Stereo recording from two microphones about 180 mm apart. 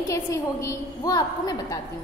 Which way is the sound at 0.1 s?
15° left (ahead or behind).